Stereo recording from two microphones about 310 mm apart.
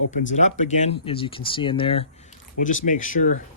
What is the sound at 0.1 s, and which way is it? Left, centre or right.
Speech, left.